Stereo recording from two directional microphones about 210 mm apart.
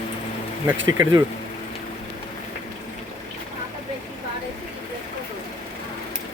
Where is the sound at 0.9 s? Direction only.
15° right (ahead or behind).